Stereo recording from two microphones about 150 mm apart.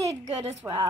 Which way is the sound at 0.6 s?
20° right (ahead or behind).